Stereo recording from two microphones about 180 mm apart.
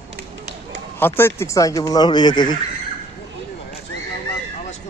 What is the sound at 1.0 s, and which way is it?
Speech, 10° left (ahead or behind).